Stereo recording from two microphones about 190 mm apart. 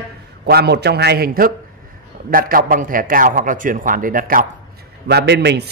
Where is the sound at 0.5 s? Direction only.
60° right (ahead or behind).